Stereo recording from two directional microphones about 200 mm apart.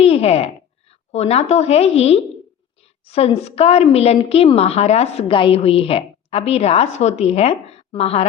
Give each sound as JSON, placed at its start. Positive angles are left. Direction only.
{"t": 0.0, "sound": "a woman's voice", "side_deg": 30}